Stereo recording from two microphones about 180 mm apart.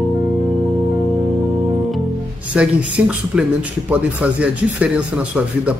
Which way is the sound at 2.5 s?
5° right (ahead or behind).